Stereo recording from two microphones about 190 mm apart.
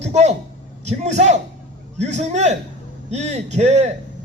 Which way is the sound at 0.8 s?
35° right (ahead or behind).